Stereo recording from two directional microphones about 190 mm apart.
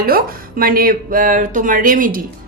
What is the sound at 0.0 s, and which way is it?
A woman's voice, 50° right (ahead or behind).